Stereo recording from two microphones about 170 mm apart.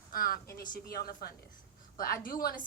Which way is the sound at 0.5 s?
55° left (ahead or behind).